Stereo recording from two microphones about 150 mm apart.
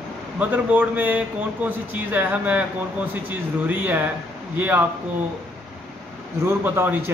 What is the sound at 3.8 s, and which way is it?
A man's voice, 10° right (ahead or behind).